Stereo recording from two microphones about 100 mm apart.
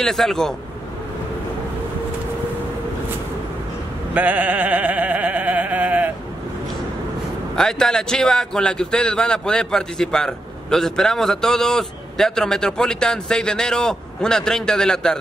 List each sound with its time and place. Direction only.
0.0 s a man's voice: 5° left (ahead or behind)
4.1 s a sound: 15° right (ahead or behind)
7.5 s a man's voice: 5° left (ahead or behind)